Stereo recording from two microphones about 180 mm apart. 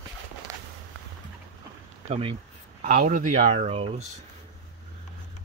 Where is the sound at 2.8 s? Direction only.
45° right (ahead or behind).